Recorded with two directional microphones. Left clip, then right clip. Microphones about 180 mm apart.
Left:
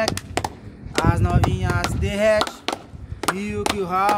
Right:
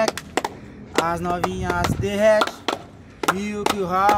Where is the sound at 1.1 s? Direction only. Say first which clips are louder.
Even; centre (ahead or behind).